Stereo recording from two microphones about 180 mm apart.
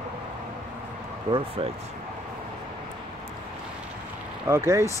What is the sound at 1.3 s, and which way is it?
Speech, 30° right (ahead or behind).